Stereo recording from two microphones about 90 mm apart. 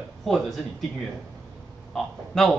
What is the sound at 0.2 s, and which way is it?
Speech, centre (ahead or behind).